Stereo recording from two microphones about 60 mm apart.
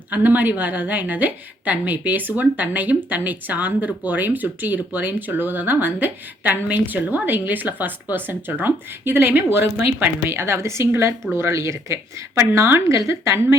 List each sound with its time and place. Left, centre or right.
0.1 s a woman's voice: right